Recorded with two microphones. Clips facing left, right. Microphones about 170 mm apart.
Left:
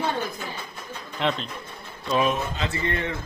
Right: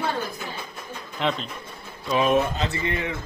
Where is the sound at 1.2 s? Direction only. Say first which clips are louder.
Even; centre (ahead or behind).